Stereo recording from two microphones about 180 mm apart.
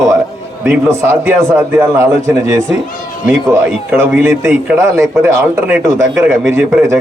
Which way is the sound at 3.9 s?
15° right (ahead or behind).